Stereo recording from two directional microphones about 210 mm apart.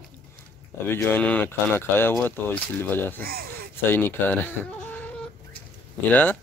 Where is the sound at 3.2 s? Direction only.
45° right (ahead or behind).